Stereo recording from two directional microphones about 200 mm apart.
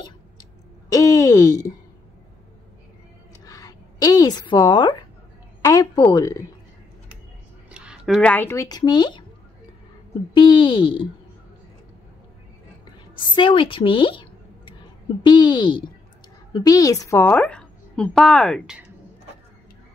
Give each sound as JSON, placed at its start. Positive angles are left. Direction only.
{"t": 0.8, "sound": "a sound", "side_deg": 15}
{"t": 3.4, "sound": "a sound", "side_deg": 15}
{"t": 5.6, "sound": "a woman's voice", "side_deg": 20}
{"t": 7.7, "sound": "speech", "side_deg": -5}
{"t": 10.3, "sound": "speech", "side_deg": 25}
{"t": 13.3, "sound": "a woman's voice", "side_deg": 25}